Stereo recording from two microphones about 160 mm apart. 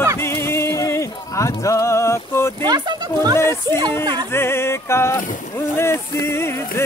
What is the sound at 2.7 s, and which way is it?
Speech, 25° right (ahead or behind).